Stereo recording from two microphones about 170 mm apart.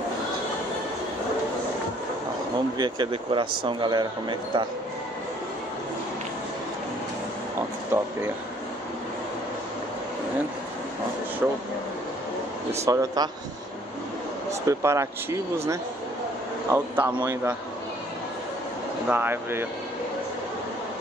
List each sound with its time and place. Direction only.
2.8 s speech: 25° right (ahead or behind)
7.9 s a sound: 15° right (ahead or behind)
11.4 s speech: 10° right (ahead or behind)
12.8 s speech: 20° right (ahead or behind)
14.7 s speech: 15° right (ahead or behind)
19.0 s speech: 10° right (ahead or behind)